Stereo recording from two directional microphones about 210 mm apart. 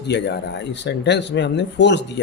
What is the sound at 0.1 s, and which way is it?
A man's voice, 55° left (ahead or behind).